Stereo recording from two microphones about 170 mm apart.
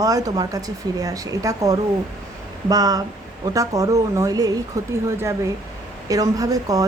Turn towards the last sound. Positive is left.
turn(degrees=-20)  # may be behind; listen again after turning